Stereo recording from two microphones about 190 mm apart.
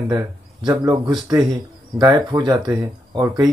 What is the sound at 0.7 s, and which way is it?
Speech, 20° right (ahead or behind).